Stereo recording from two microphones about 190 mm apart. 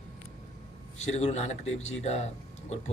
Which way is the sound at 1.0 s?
35° left (ahead or behind).